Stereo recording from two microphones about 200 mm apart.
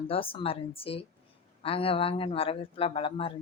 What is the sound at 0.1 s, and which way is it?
A woman's voice, 25° left (ahead or behind).